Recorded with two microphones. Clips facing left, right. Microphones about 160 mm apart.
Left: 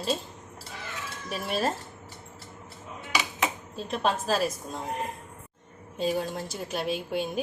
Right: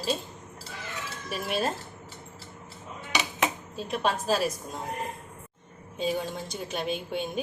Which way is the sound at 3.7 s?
Centre (ahead or behind).